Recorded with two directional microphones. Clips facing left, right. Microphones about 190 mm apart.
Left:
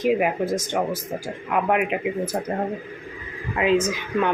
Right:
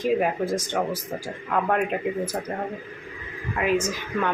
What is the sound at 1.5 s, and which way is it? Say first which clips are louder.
Speech: left 2 dB; 15° left (ahead or behind).